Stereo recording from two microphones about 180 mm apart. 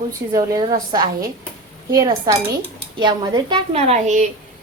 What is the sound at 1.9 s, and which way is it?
A woman's voice, 20° right (ahead or behind).